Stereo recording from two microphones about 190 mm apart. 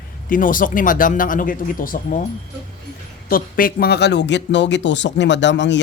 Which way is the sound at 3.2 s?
50° left (ahead or behind).